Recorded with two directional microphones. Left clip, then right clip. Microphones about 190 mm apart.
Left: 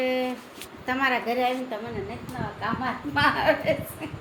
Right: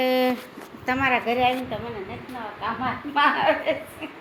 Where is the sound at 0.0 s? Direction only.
50° right (ahead or behind).